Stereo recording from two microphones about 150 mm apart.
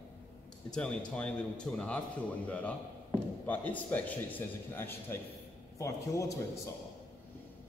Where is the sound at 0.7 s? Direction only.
5° left (ahead or behind).